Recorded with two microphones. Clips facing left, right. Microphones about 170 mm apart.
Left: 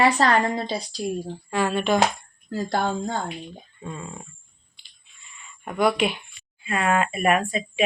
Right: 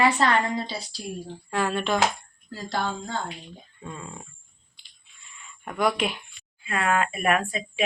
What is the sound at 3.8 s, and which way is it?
Speech, 5° left (ahead or behind).